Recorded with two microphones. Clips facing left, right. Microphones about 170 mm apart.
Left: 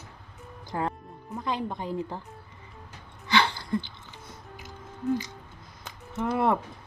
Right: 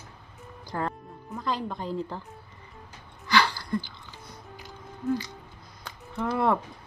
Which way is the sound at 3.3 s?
20° left (ahead or behind).